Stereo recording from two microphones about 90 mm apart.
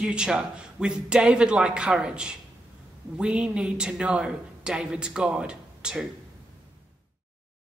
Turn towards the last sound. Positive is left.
turn(degrees=-10)  # may be behind; listen again after turning